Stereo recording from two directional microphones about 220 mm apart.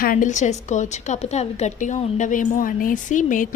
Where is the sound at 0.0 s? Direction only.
40° left (ahead or behind).